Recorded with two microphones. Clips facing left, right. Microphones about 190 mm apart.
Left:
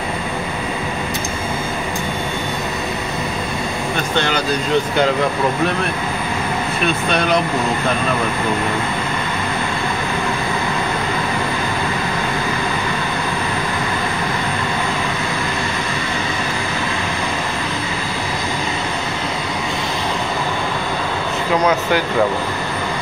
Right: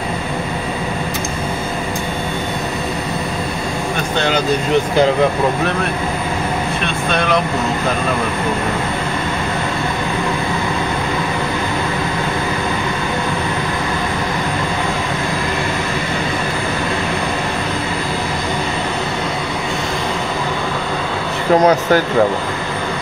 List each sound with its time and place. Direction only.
21.5 s speech: 45° right (ahead or behind)